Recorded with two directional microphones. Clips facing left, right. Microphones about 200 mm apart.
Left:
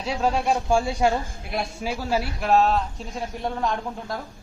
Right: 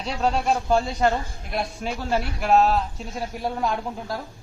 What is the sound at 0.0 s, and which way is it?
A woman's voice, 5° left (ahead or behind).